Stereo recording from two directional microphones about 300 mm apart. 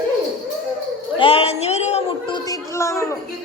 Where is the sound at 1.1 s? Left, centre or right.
Centre.